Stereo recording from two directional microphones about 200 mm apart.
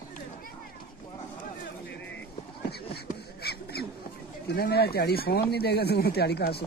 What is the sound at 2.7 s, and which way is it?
Beatboxing, 50° left (ahead or behind).